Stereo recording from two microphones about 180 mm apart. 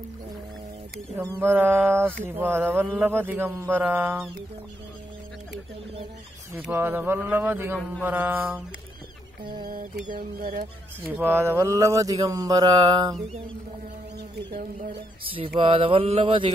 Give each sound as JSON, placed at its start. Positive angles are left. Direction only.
{"t": 1.1, "sound": "speech", "side_deg": -10}
{"t": 6.6, "sound": "speech", "side_deg": -10}
{"t": 10.0, "sound": "a sound", "side_deg": -55}
{"t": 11.1, "sound": "mantra", "side_deg": -10}
{"t": 14.5, "sound": "a sound", "side_deg": -50}
{"t": 15.2, "sound": "mantra", "side_deg": -30}